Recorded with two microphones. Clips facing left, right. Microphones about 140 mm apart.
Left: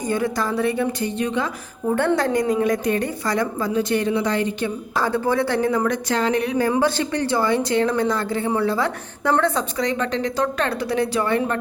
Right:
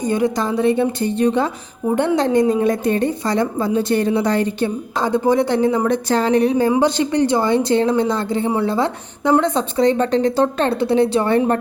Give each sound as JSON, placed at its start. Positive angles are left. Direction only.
{"t": 0.0, "sound": "a woman's voice", "side_deg": -20}
{"t": 2.1, "sound": "a woman's voice", "side_deg": -25}
{"t": 4.9, "sound": "a woman's voice", "side_deg": -20}